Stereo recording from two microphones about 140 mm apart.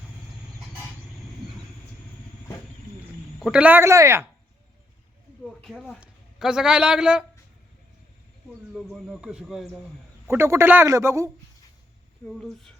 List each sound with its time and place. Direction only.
3.4 s a man's voice: 10° right (ahead or behind)
5.4 s a sound: centre (ahead or behind)
6.0 s speech: 5° right (ahead or behind)
8.7 s speech: centre (ahead or behind)
10.2 s a man's voice: 15° right (ahead or behind)
12.2 s speech: centre (ahead or behind)